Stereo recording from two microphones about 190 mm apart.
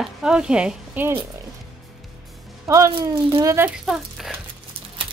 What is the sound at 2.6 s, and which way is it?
Speech, 15° right (ahead or behind).